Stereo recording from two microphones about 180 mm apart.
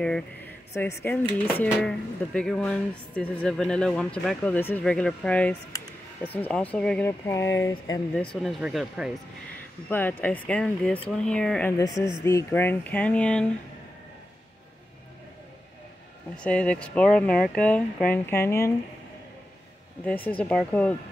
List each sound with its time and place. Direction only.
0.0 s speech: 5° left (ahead or behind)
8.4 s speech: 5° right (ahead or behind)
9.8 s speech: 10° left (ahead or behind)
11.8 s a woman's voice: 20° left (ahead or behind)
16.3 s speech: 5° left (ahead or behind)
20.1 s speech: 10° left (ahead or behind)